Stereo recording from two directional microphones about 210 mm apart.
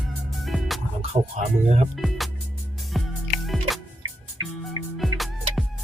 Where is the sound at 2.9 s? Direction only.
Centre (ahead or behind).